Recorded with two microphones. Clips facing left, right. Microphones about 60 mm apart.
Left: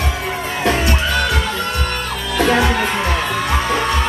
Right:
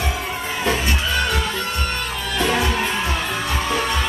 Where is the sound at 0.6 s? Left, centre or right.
Left.